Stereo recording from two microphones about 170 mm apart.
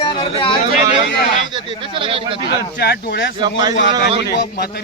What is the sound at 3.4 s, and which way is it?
Speech, 25° right (ahead or behind).